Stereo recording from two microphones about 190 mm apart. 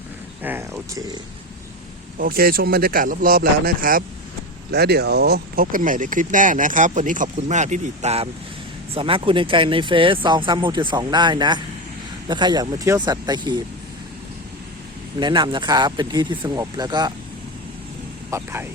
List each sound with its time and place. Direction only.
0.4 s speech: 10° right (ahead or behind)
2.1 s speech: 50° right (ahead or behind)
4.7 s speech: 60° right (ahead or behind); by 13.7 s 25° right (ahead or behind)
15.2 s speech: 25° right (ahead or behind)
18.3 s speech: 15° right (ahead or behind)